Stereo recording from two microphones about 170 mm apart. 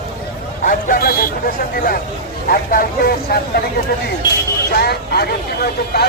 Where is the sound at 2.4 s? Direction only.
55° left (ahead or behind).